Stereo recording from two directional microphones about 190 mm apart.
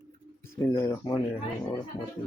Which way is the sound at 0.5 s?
15° left (ahead or behind).